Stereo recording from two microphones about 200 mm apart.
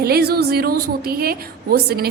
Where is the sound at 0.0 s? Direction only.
50° right (ahead or behind).